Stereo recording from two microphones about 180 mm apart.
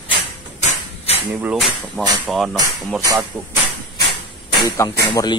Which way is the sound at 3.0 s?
20° right (ahead or behind).